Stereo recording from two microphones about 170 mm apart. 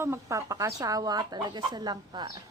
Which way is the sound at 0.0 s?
15° right (ahead or behind).